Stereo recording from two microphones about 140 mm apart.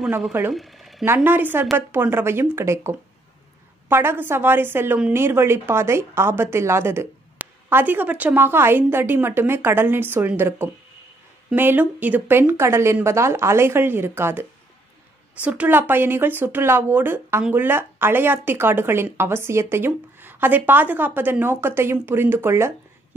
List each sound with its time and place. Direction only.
0.5 s speech: centre (ahead or behind)
1.0 s speech: 15° right (ahead or behind)
15.4 s speech: 10° right (ahead or behind)